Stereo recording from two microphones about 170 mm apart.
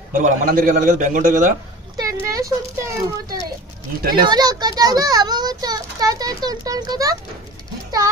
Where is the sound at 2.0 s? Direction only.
20° right (ahead or behind).